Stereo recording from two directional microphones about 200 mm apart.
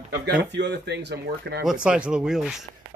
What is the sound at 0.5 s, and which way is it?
Speech, 60° right (ahead or behind).